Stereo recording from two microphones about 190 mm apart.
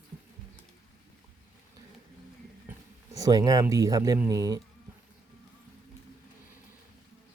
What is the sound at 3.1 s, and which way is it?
Speech, 20° right (ahead or behind).